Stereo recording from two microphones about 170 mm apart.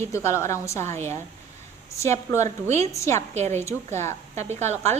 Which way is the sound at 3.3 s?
40° right (ahead or behind).